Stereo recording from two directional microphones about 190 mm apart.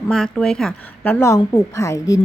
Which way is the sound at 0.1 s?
5° left (ahead or behind).